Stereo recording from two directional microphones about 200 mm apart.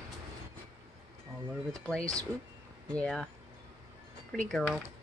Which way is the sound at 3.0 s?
5° left (ahead or behind).